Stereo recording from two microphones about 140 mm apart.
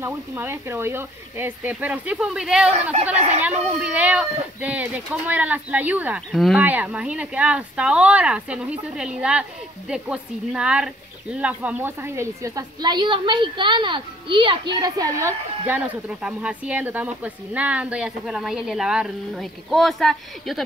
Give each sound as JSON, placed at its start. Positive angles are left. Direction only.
{"t": 0.0, "sound": "a woman's voice", "side_deg": -15}
{"t": 2.9, "sound": "speech", "side_deg": -50}
{"t": 3.8, "sound": "a woman's voice", "side_deg": -10}
{"t": 6.3, "sound": "speech", "side_deg": 0}
{"t": 6.6, "sound": "a woman's voice", "side_deg": -10}